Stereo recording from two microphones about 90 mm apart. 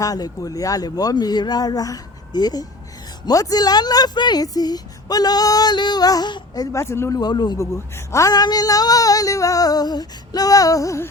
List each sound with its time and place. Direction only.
0.0 s a woman's voice: 40° left (ahead or behind)
6.7 s female singing: 30° left (ahead or behind)
7.2 s a woman's voice: 50° left (ahead or behind)
7.6 s female singing: 35° left (ahead or behind)
8.3 s female singing: 45° left (ahead or behind)